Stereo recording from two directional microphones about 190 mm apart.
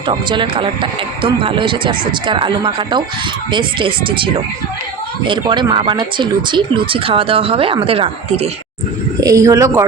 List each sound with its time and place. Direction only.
0.1 s speech: 25° right (ahead or behind)
9.2 s speech: 15° right (ahead or behind)